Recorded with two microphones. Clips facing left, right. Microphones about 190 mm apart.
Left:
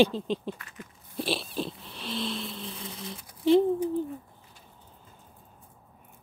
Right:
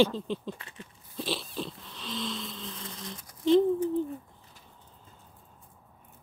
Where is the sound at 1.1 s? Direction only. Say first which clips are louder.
Left 3 dB; 15° left (ahead or behind).